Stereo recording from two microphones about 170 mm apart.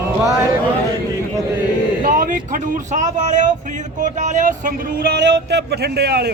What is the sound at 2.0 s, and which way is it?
Speech, 55° right (ahead or behind).